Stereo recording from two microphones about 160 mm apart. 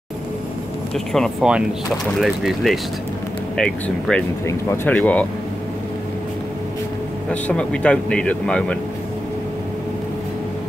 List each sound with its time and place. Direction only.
0.9 s speech: centre (ahead or behind)
4.5 s speech: 20° left (ahead or behind)
7.2 s speech: 5° left (ahead or behind)